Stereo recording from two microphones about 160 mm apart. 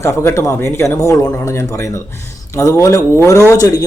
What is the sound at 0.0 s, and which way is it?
Speech, 15° left (ahead or behind).